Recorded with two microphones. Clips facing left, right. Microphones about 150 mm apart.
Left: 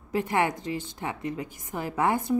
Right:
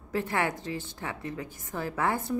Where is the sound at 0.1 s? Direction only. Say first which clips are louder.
Left 3 dB; 15° left (ahead or behind).